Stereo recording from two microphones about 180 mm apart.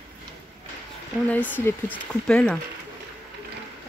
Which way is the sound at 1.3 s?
10° left (ahead or behind).